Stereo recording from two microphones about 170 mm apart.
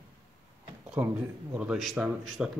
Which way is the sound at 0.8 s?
10° right (ahead or behind).